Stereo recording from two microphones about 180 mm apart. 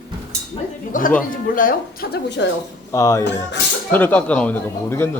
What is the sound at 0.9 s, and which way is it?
Speech, 50° left (ahead or behind).